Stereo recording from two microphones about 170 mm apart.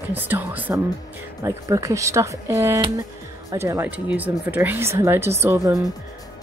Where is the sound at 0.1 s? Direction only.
10° right (ahead or behind).